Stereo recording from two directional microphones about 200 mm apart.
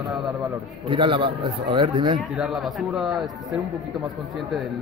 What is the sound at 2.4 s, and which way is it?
A man's voice, centre (ahead or behind).